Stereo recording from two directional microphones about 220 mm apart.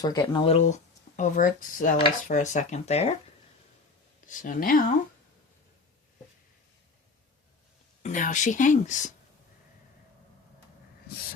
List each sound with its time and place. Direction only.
0.0 s speech: 20° left (ahead or behind)
4.3 s speech: 35° left (ahead or behind)
8.0 s speech: 35° left (ahead or behind)